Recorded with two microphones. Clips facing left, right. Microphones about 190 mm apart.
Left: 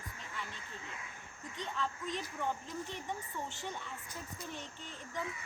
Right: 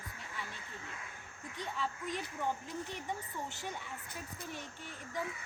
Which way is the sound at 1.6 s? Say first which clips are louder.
Even; 10° right (ahead or behind).